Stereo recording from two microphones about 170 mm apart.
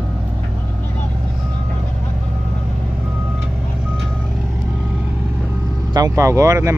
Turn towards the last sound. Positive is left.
turn(degrees=-15)  # may be behind; listen again after turning